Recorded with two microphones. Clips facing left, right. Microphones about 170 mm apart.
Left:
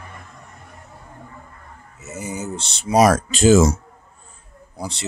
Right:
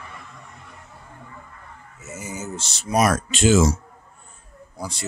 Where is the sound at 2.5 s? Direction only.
60° left (ahead or behind).